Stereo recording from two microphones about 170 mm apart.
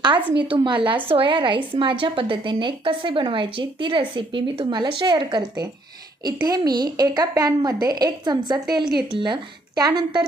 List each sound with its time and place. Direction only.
0.3 s a woman's voice: 30° right (ahead or behind)